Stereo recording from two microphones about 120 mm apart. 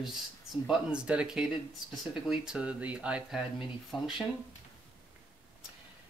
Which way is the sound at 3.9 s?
40° left (ahead or behind).